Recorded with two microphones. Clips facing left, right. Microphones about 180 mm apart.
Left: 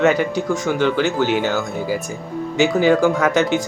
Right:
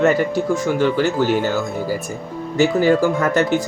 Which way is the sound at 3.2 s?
90° left.